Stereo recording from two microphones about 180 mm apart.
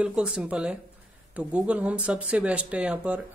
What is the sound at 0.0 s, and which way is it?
Speech, 5° right (ahead or behind).